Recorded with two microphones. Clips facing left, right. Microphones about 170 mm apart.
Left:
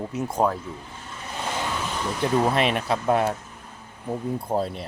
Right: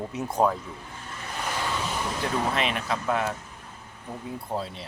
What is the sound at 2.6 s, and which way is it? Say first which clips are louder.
Speech: left 5 dB; 40° left (ahead or behind).